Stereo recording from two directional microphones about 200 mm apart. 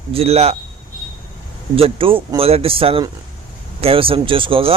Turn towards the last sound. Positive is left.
turn(degrees=-25)  # may be behind; listen again after turning